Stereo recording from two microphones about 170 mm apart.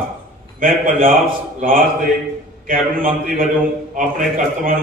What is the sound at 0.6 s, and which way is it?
A man's voice, 55° right (ahead or behind).